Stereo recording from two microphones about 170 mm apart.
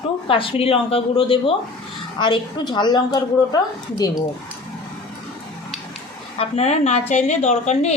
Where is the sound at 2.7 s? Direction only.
25° left (ahead or behind).